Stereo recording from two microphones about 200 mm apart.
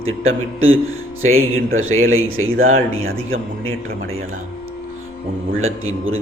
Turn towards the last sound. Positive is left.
turn(degrees=-90)